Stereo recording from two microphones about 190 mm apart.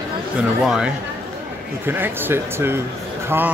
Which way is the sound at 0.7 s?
5° right (ahead or behind).